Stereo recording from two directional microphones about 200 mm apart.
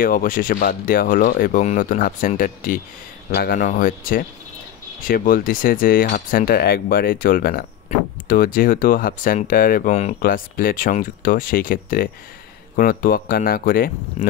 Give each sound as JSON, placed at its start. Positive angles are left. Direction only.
{"t": 0.0, "sound": "speech", "side_deg": 45}
{"t": 7.9, "sound": "a sound", "side_deg": 40}
{"t": 8.3, "sound": "speech", "side_deg": 45}